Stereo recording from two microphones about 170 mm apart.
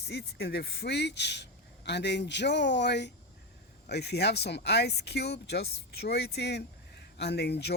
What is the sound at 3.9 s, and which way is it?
Speech, 75° left (ahead or behind).